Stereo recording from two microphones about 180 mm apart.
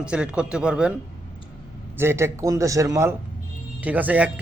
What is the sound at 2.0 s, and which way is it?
Speech, 15° right (ahead or behind).